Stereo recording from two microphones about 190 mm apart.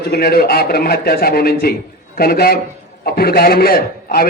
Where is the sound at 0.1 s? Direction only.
55° left (ahead or behind).